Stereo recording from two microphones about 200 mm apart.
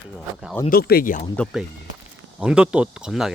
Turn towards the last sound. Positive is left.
turn(degrees=-5)  # may be behind; listen again after turning